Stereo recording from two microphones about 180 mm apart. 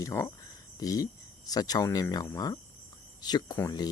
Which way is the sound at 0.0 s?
15° left (ahead or behind).